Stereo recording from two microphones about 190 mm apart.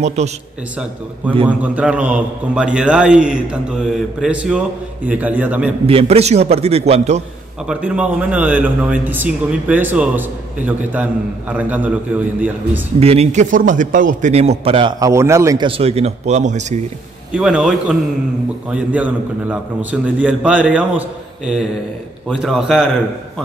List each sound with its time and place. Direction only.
0.0 s a man's voice: 35° right (ahead or behind)
1.5 s a man's voice: 5° right (ahead or behind)
5.9 s a man's voice: 30° right (ahead or behind)
7.6 s a man's voice: 5° right (ahead or behind)
13.0 s a man's voice: 35° right (ahead or behind); by 15.7 s 20° right (ahead or behind)
15.8 s a man's voice: 30° right (ahead or behind)
17.3 s a man's voice: 5° right (ahead or behind)
22.3 s a man's voice: centre (ahead or behind)